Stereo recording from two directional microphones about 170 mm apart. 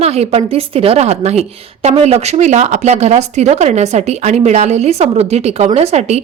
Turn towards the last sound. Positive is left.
turn(degrees=-40)  # may be behind; listen again after turning